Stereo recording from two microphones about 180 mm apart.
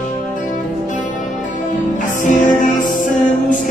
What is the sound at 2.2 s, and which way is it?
Music, 45° left (ahead or behind).